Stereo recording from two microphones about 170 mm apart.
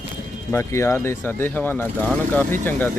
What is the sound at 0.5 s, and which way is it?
Speech, 15° left (ahead or behind).